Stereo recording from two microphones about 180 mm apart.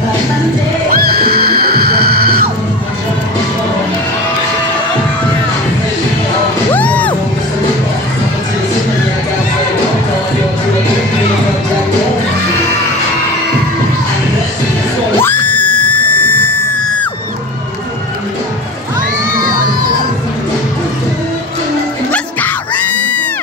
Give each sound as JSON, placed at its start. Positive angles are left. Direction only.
{"t": 0.8, "sound": "music", "side_deg": -55}
{"t": 6.7, "sound": "music", "side_deg": 10}
{"t": 15.1, "sound": "music", "side_deg": 10}
{"t": 22.1, "sound": "music", "side_deg": 10}